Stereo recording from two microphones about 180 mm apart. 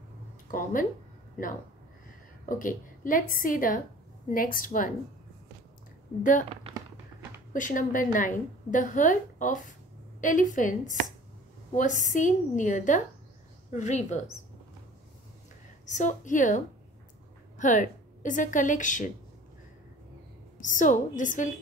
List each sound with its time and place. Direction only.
0.5 s a woman's voice: 50° left (ahead or behind)
2.4 s a woman's voice: 50° left (ahead or behind)
6.7 s a sound: 35° right (ahead or behind)
7.5 s a woman's voice: 45° left (ahead or behind)
15.8 s a woman's voice: 40° left (ahead or behind)
20.6 s a woman's voice: 45° left (ahead or behind)